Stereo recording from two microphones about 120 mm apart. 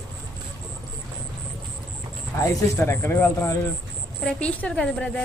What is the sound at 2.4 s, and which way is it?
Speech, 20° left (ahead or behind).